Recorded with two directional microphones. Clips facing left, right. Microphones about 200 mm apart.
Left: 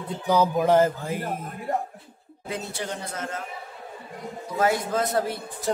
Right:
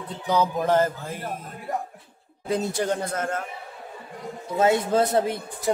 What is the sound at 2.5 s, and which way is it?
Speech, 45° right (ahead or behind).